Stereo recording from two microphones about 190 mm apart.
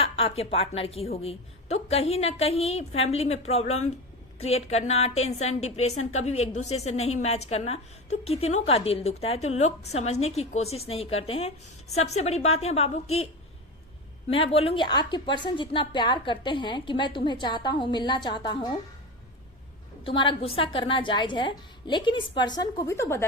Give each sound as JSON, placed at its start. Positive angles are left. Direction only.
{"t": 0.0, "sound": "a woman's voice", "side_deg": 30}
{"t": 14.3, "sound": "a woman's voice", "side_deg": 30}
{"t": 20.1, "sound": "a woman's voice", "side_deg": 25}